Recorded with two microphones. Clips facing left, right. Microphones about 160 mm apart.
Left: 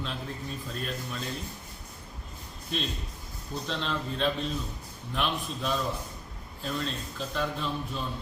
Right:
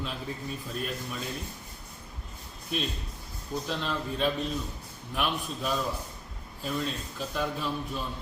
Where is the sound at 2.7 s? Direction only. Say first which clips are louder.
Right 1 dB; 10° right (ahead or behind).